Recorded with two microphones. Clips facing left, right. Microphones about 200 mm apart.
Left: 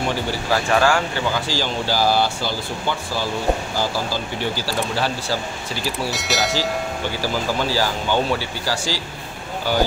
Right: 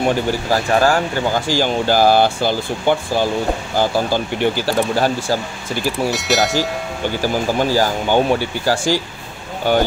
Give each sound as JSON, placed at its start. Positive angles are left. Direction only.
{"t": 0.0, "sound": "speech", "side_deg": -40}
{"t": 6.0, "sound": "speech", "side_deg": 0}
{"t": 7.5, "sound": "speech", "side_deg": -50}